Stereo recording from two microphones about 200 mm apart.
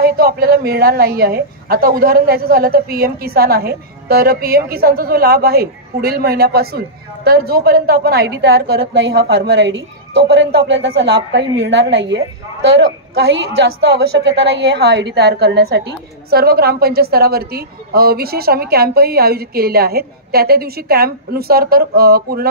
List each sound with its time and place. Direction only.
0.0 s a woman's voice: 50° right (ahead or behind)
13.8 s a woman's voice: 60° right (ahead or behind)